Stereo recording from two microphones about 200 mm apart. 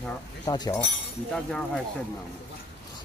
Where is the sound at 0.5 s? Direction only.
20° left (ahead or behind).